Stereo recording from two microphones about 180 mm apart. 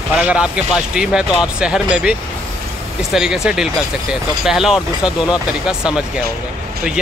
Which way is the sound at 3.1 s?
5° right (ahead or behind).